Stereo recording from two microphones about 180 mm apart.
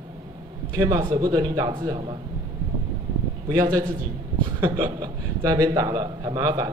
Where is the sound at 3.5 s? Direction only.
20° right (ahead or behind).